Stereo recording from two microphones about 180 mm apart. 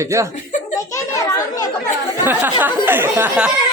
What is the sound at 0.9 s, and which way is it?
Children playing, 20° left (ahead or behind).